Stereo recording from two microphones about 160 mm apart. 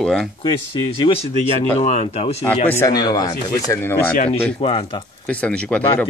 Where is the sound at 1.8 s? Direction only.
45° left (ahead or behind).